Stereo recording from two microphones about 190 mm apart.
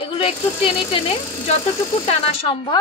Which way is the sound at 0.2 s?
30° left (ahead or behind).